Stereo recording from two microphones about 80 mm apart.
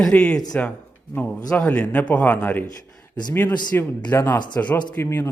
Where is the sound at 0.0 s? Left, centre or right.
Centre.